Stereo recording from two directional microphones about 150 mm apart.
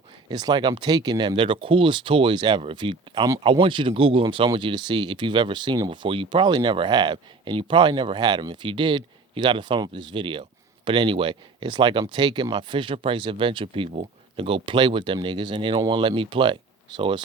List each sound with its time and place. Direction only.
0.3 s speech: 25° right (ahead or behind)